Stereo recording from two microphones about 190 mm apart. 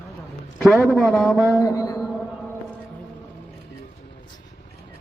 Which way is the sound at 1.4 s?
10° right (ahead or behind).